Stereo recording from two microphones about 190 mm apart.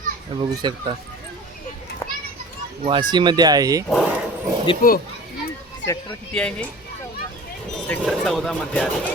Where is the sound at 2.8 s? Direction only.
25° right (ahead or behind).